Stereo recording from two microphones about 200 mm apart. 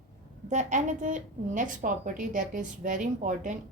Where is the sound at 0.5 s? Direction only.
35° right (ahead or behind).